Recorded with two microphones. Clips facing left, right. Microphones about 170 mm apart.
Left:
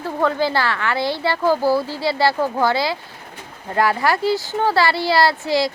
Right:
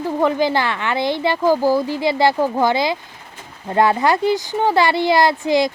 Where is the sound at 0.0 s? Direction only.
15° right (ahead or behind).